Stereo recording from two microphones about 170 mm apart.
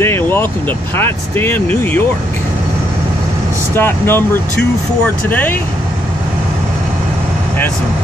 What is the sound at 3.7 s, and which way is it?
Speech, 15° left (ahead or behind).